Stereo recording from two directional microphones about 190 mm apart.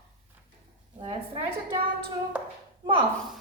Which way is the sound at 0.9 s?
30° right (ahead or behind).